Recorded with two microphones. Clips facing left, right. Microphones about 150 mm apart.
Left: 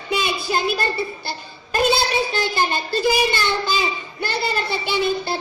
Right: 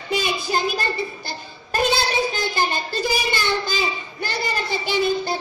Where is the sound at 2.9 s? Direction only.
45° right (ahead or behind).